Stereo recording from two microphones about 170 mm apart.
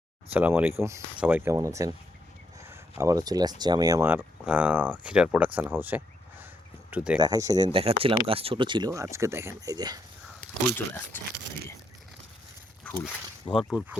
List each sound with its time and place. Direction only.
0.3 s speech: 10° right (ahead or behind)
3.0 s speech: 20° right (ahead or behind)
4.2 s speech: 5° right (ahead or behind)
7.2 s speech: 20° right (ahead or behind)
12.8 s walk: 15° left (ahead or behind)
13.5 s speech: centre (ahead or behind)